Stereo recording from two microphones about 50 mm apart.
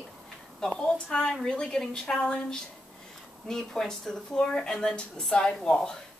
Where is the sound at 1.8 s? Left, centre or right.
Centre.